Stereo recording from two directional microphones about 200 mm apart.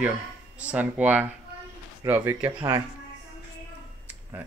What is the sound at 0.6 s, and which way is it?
Speech, 5° right (ahead or behind).